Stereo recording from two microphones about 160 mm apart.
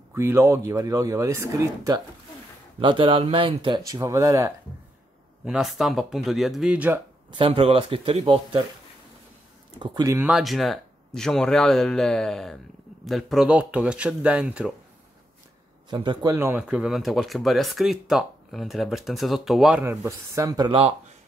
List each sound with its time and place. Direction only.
0.1 s speech: 15° right (ahead or behind)
2.8 s speech: 30° right (ahead or behind)
5.4 s speech: 5° right (ahead or behind)
7.2 s speech: 35° right (ahead or behind)
9.8 s speech: 20° right (ahead or behind)
10.2 s speech: centre (ahead or behind)
15.9 s speech: 30° right (ahead or behind)
16.3 s speech: 10° right (ahead or behind)
19.8 s speech: 15° right (ahead or behind); by 20.9 s 30° right (ahead or behind)